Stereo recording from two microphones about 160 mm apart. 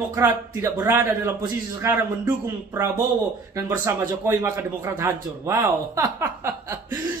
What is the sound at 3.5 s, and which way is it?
A man's voice, 20° right (ahead or behind).